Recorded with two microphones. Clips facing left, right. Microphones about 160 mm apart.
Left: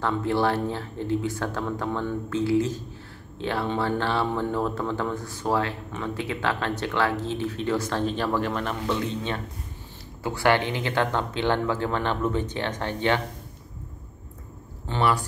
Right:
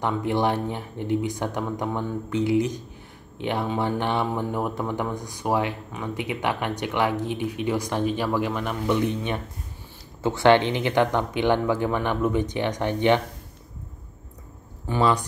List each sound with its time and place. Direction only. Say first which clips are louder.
0.0 s speech: even; 15° right (ahead or behind)
14.9 s a man's voice: right 2 dB; 20° right (ahead or behind)